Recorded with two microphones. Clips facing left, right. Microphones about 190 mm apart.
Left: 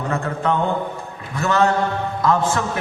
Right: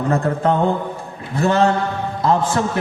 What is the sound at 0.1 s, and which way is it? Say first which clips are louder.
A man's voice: right 4 dB; 35° right (ahead or behind).